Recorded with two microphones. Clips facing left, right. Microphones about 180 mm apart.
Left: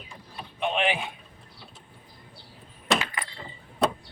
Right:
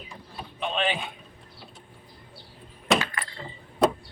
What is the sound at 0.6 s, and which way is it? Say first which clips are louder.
Speech: left 2 dB; 15° left (ahead or behind).